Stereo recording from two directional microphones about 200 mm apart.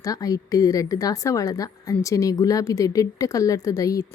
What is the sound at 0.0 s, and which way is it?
A woman's voice, 20° left (ahead or behind).